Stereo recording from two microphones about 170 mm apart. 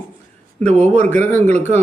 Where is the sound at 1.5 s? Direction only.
40° right (ahead or behind).